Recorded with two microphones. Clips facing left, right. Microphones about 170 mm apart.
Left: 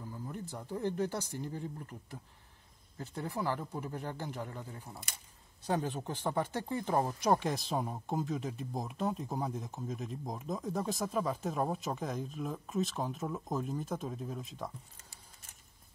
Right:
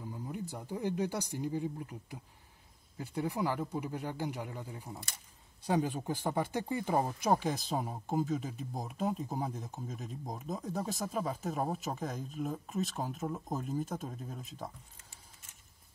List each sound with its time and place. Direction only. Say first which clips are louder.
0.3 s speech: right 1 dB; 10° right (ahead or behind)